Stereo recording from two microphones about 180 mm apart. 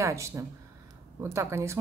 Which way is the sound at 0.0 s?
15° right (ahead or behind).